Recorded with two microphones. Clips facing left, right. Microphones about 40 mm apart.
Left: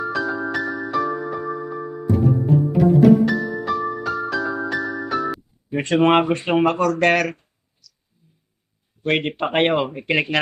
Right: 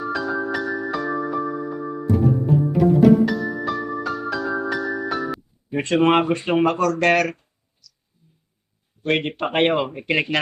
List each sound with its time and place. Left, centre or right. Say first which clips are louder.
0.0 s music: left 1 dB; centre
5.9 s speech: left 1 dB; centre
6.7 s speech: left 1 dB; left
7.0 s speech: even; centre
9.0 s speech: left 1 dB; centre